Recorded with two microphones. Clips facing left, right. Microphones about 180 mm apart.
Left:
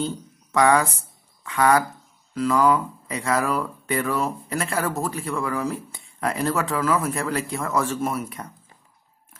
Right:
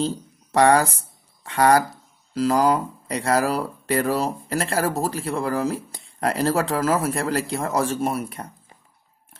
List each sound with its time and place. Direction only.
0.1 s speech: 35° right (ahead or behind)